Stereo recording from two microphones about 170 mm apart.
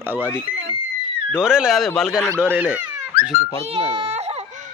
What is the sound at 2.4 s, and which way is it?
Speech, 10° right (ahead or behind).